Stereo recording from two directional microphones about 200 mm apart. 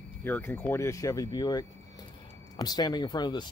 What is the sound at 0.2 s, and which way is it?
Speech, 10° left (ahead or behind).